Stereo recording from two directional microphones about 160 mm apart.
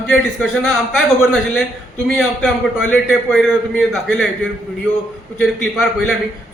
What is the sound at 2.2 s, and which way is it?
A man's voice, 5° left (ahead or behind).